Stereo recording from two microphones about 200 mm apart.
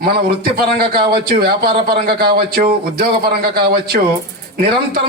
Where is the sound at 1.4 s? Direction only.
50° right (ahead or behind).